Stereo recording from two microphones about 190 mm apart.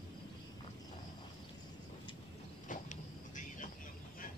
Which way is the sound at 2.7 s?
40° left (ahead or behind).